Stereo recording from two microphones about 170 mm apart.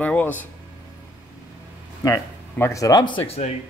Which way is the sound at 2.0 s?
15° left (ahead or behind).